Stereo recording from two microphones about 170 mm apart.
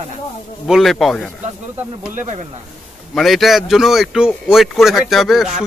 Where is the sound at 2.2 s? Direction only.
45° right (ahead or behind).